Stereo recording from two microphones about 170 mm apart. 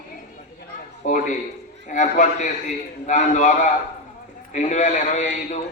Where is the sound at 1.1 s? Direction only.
50° left (ahead or behind).